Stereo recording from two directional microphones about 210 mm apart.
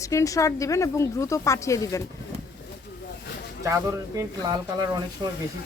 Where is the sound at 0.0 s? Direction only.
15° left (ahead or behind).